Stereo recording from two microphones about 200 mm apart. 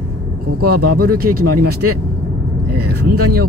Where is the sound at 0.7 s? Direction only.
50° right (ahead or behind).